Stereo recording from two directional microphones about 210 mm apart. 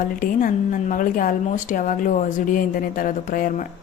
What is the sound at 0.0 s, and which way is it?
A woman's voice, 40° left (ahead or behind).